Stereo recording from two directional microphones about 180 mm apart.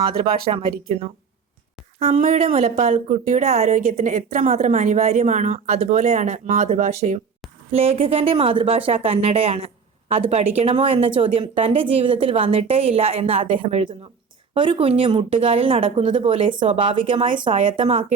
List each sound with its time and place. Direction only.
0.0 s speech: 30° right (ahead or behind)